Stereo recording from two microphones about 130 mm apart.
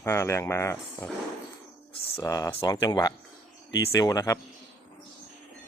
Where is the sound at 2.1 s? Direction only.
25° left (ahead or behind).